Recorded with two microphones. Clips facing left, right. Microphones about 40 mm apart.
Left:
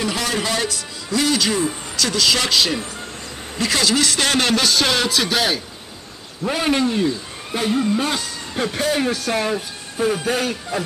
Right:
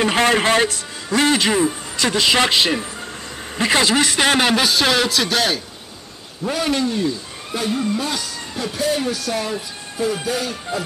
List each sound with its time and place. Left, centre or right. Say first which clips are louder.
0.0 s a man's voice: right 6 dB; right; by 5.6 s centre
6.4 s a man's voice: left 1 dB; centre
8.7 s speech: right 1 dB; left